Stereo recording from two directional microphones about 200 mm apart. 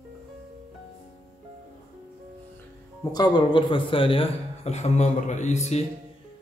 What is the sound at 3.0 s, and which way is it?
A man's voice, 20° left (ahead or behind).